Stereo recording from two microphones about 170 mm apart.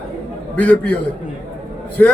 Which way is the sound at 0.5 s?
10° left (ahead or behind).